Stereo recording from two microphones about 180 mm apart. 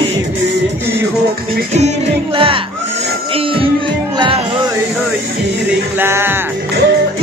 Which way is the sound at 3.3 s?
30° right (ahead or behind).